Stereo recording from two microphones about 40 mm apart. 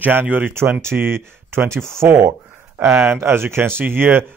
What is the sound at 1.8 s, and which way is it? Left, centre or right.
Speech, right.